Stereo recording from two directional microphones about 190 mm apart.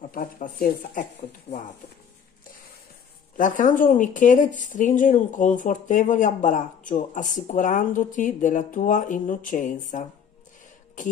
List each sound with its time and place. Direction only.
0.1 s speech: 45° left (ahead or behind)
3.3 s speech: 45° left (ahead or behind)